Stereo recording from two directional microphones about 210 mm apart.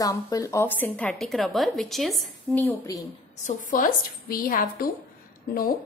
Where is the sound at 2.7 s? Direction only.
15° left (ahead or behind).